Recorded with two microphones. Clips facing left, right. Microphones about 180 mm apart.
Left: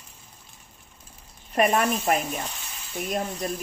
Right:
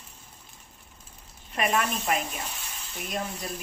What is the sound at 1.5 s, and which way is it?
Speech, 45° left (ahead or behind).